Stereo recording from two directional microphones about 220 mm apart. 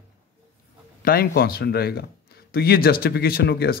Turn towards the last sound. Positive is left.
turn(degrees=45)  # may be behind; listen again after turning